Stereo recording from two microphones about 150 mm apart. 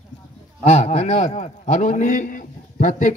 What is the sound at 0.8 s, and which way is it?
A man's voice, 45° left (ahead or behind).